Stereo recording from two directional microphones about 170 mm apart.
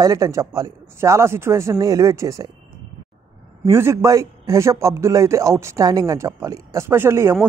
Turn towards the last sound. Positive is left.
turn(degrees=-15)  # may be behind; listen again after turning